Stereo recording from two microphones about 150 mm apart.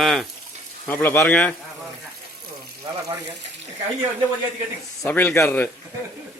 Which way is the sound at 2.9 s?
30° right (ahead or behind).